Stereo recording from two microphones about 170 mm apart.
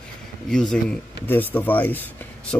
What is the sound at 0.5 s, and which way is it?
Speech, 5° left (ahead or behind).